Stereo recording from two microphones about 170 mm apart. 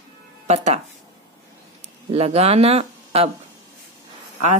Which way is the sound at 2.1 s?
35° right (ahead or behind).